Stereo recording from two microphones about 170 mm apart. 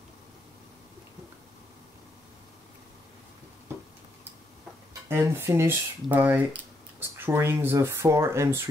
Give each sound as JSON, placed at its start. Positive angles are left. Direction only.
{"t": 5.0, "sound": "speech", "side_deg": -15}